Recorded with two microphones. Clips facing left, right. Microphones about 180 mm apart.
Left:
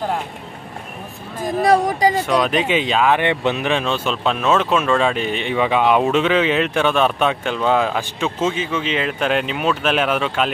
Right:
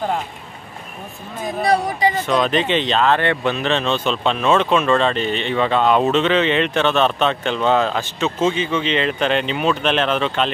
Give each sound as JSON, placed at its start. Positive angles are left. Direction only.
{"t": 1.6, "sound": "speech", "side_deg": 45}
{"t": 2.2, "sound": "speech", "side_deg": 10}